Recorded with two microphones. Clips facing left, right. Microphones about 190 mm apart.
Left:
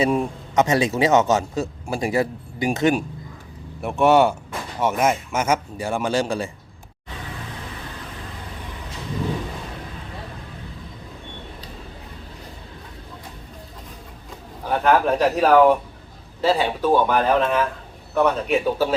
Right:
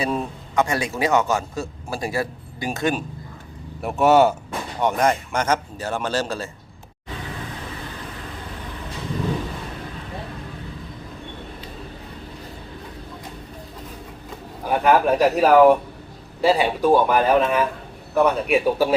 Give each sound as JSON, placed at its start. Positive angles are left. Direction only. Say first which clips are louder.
{"t": 0.1, "sound": "a man's voice", "louder": "left 3 dB", "side_deg": 15}
{"t": 3.8, "sound": "speech", "louder": "even", "side_deg": -5}
{"t": 14.6, "sound": "speech", "louder": "right 1 dB", "side_deg": -10}